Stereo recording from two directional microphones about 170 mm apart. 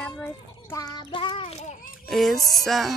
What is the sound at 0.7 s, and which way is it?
Child singing, 20° left (ahead or behind).